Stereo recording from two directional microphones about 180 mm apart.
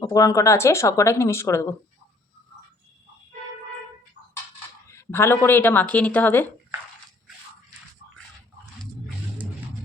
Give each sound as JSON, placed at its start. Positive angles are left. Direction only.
{"t": 0.0, "sound": "speech", "side_deg": 20}
{"t": 4.9, "sound": "speech", "side_deg": 15}